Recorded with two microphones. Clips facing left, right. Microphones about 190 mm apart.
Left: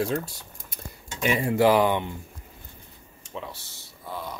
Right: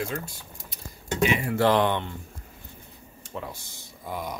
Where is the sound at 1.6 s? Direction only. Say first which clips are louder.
Left 2 dB; 10° left (ahead or behind).